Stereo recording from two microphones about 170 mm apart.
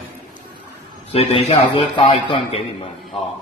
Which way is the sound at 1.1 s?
35° left (ahead or behind).